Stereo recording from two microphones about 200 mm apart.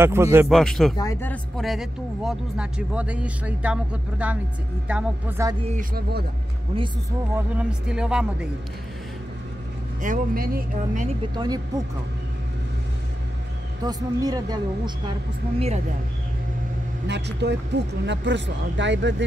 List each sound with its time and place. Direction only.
0.0 s speech: 10° right (ahead or behind)
0.5 s speech: centre (ahead or behind)
0.9 s speech: 15° left (ahead or behind)
1.3 s speech: centre (ahead or behind)
5.7 s speech: 45° right (ahead or behind)
6.7 s speech: 25° right (ahead or behind)
7.3 s speech: 5° right (ahead or behind)
10.0 s speech: 45° right (ahead or behind)
11.3 s speech: 20° right (ahead or behind)
13.8 s speech: 20° right (ahead or behind)
17.1 s a man's voice: 60° right (ahead or behind)